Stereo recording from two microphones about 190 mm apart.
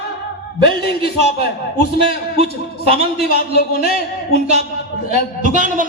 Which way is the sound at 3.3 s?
60° left (ahead or behind).